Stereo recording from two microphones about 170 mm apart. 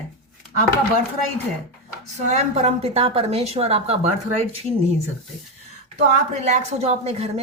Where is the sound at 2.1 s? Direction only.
45° right (ahead or behind).